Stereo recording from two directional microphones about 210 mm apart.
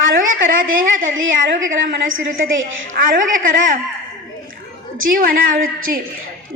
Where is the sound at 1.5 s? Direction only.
40° right (ahead or behind).